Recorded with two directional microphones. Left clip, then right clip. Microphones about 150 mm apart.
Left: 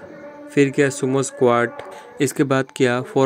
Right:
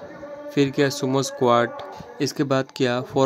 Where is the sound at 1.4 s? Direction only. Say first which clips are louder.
Left 2 dB; centre (ahead or behind).